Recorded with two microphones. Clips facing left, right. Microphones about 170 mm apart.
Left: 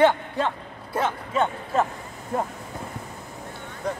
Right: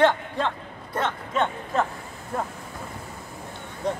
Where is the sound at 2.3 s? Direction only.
20° left (ahead or behind).